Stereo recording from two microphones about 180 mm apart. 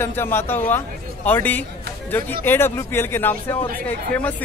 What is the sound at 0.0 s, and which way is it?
Speech, 10° left (ahead or behind).